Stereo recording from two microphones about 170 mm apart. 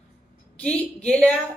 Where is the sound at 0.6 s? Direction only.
5° left (ahead or behind).